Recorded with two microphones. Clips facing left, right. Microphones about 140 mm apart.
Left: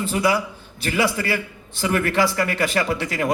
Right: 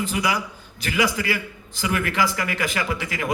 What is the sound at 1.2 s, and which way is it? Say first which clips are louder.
Speech: left 2 dB; 40° left (ahead or behind).